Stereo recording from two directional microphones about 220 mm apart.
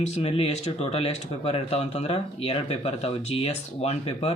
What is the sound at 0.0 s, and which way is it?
Speech, 30° left (ahead or behind).